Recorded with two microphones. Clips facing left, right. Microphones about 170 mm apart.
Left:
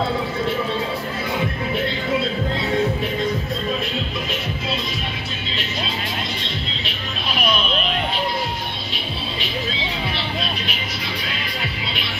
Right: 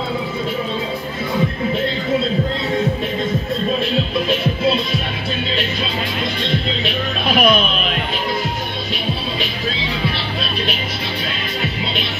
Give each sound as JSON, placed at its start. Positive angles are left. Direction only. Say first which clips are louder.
{"t": 7.2, "sound": "music", "louder": "right 8 dB", "side_deg": -55}